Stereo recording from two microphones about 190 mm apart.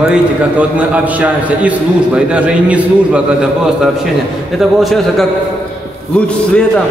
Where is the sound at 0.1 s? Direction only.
5° right (ahead or behind).